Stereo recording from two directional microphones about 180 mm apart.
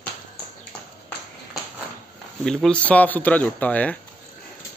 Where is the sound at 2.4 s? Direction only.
5° left (ahead or behind).